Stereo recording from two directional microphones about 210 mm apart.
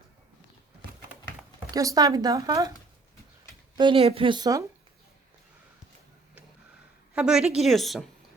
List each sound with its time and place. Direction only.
1.7 s speech: 15° right (ahead or behind)
3.8 s a woman's voice: 25° right (ahead or behind)
7.1 s a woman's voice: 5° right (ahead or behind)